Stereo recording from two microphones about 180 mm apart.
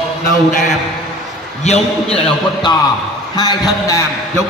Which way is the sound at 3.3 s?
20° left (ahead or behind).